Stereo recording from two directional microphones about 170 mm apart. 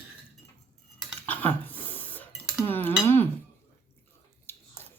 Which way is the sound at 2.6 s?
10° left (ahead or behind).